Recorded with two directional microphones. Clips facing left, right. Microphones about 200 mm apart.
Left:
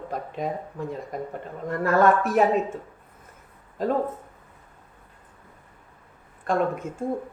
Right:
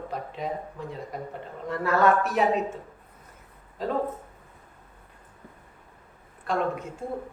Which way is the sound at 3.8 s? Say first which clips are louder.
Left 5 dB; 45° left (ahead or behind).